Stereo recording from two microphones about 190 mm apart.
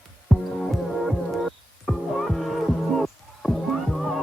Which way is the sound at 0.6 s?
Centre (ahead or behind).